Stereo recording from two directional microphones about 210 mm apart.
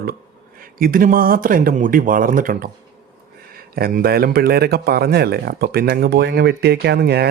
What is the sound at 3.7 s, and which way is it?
Speech, 45° right (ahead or behind).